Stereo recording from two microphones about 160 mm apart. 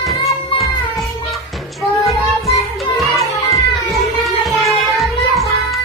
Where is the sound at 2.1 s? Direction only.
20° left (ahead or behind).